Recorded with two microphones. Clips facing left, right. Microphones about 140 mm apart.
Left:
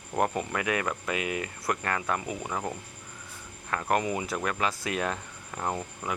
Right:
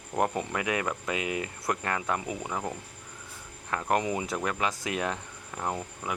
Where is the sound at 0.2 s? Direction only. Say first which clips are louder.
Even; 20° right (ahead or behind).